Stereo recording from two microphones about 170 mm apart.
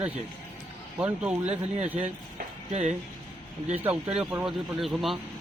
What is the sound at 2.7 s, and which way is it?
Speech, 40° right (ahead or behind).